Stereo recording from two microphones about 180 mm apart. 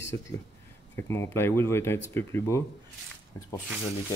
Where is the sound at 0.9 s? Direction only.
15° left (ahead or behind).